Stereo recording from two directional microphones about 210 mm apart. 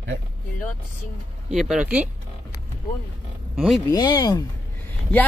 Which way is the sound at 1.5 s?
5° right (ahead or behind).